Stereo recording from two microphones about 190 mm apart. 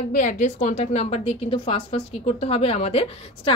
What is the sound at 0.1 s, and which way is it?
A woman's voice, 40° left (ahead or behind).